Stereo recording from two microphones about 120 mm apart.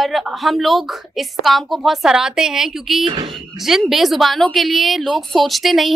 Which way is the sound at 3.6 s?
Centre (ahead or behind).